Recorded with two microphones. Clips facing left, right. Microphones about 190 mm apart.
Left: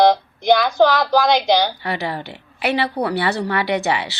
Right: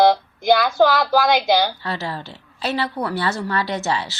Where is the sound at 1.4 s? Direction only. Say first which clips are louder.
Left 1 dB; 15° left (ahead or behind).